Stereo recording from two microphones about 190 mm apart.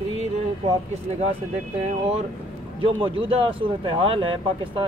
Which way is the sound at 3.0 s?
30° right (ahead or behind).